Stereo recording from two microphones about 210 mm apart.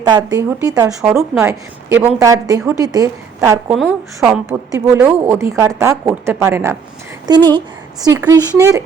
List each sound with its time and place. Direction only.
0.0 s a woman's voice: 20° right (ahead or behind)
3.7 s a woman's voice: 5° right (ahead or behind)
4.4 s a woman's voice: 15° right (ahead or behind)